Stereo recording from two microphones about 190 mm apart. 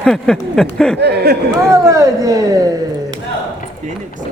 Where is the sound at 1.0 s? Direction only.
60° right (ahead or behind).